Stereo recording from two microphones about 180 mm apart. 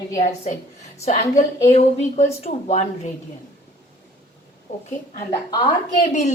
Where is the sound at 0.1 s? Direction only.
40° left (ahead or behind).